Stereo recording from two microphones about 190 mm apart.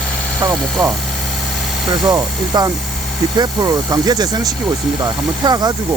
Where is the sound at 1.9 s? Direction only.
20° right (ahead or behind).